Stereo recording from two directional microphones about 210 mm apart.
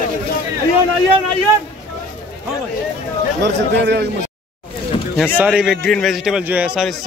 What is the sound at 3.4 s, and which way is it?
Speech, 55° right (ahead or behind).